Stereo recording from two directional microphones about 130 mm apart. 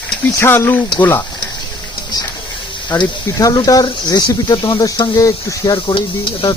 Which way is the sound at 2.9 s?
30° left (ahead or behind).